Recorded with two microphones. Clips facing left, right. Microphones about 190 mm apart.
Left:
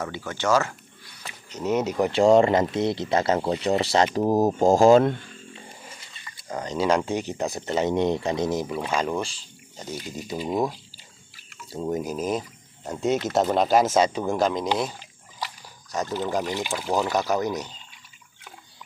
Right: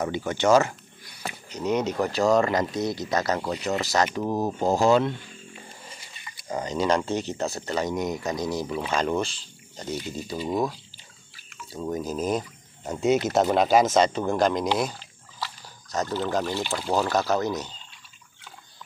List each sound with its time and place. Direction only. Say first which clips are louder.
0.0 s speech: right 4 dB; 20° right (ahead or behind)
1.5 s speech: left 1 dB; 5° left (ahead or behind)
2.0 s speech: left 6 dB; 25° left (ahead or behind); by 5.1 s 45° left (ahead or behind)
6.5 s speech: right 1 dB; 5° right (ahead or behind)
7.0 s speech: left 1 dB; 10° left (ahead or behind)
8.9 s speech: right 1 dB; 10° left (ahead or behind)
12.2 s speech: even; 5° left (ahead or behind)
13.8 s speech: even; 10° left (ahead or behind)
15.0 s speech: left 1 dB; 15° left (ahead or behind)